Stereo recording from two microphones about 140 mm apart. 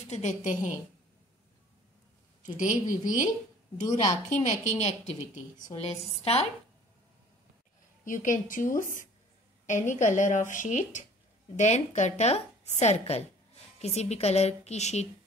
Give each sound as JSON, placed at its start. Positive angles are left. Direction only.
{"t": 0.1, "sound": "a woman's voice", "side_deg": 55}
{"t": 2.4, "sound": "a woman's voice", "side_deg": 65}
{"t": 8.0, "sound": "a woman's voice", "side_deg": 70}